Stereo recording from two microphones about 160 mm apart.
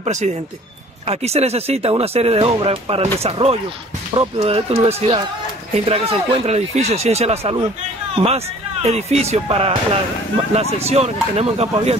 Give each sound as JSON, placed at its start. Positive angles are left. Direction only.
{"t": 0.0, "sound": "speech", "side_deg": -45}
{"t": 10.9, "sound": "speech", "side_deg": -40}